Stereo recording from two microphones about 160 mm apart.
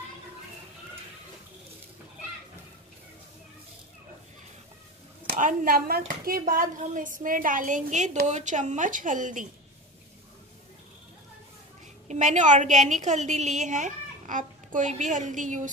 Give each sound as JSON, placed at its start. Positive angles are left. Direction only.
{"t": 5.4, "sound": "a woman's voice", "side_deg": -55}
{"t": 12.1, "sound": "a woman's voice", "side_deg": -50}